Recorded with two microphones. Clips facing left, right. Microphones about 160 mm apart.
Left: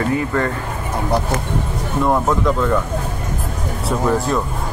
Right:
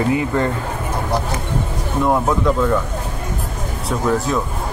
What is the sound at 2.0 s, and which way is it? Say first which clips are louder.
Speech: even; centre (ahead or behind).